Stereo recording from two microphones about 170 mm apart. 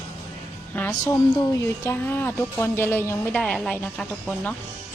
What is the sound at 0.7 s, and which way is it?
Speech, 15° left (ahead or behind).